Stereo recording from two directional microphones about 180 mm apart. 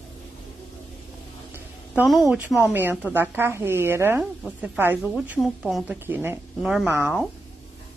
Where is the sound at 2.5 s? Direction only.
10° right (ahead or behind).